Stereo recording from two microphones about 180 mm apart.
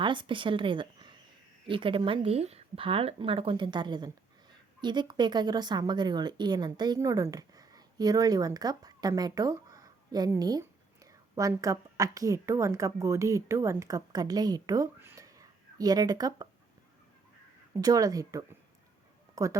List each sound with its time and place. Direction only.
0.0 s a woman's voice: 25° right (ahead or behind)
17.7 s speech: 20° right (ahead or behind)